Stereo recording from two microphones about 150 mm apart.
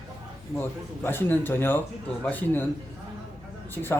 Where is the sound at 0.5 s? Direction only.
15° left (ahead or behind).